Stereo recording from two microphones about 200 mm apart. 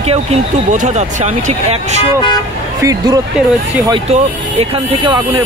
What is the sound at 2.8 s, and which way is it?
Speech, 20° right (ahead or behind).